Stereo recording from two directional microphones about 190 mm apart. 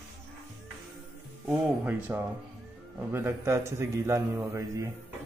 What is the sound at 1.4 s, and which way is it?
A man's voice, 10° right (ahead or behind).